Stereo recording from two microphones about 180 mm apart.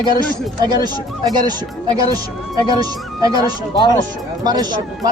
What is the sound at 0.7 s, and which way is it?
Speech, 20° right (ahead or behind).